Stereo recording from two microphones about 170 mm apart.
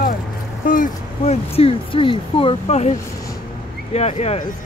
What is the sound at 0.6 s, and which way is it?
Speech, 50° left (ahead or behind).